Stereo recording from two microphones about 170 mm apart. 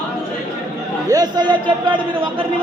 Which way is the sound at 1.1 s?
25° right (ahead or behind).